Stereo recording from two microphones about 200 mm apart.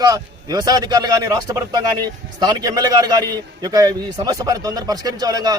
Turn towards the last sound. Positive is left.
turn(degrees=-20)  # may be behind; listen again after turning